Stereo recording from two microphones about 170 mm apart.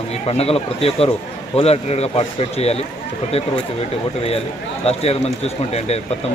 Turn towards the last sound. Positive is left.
turn(degrees=40)  # may be behind; listen again after turning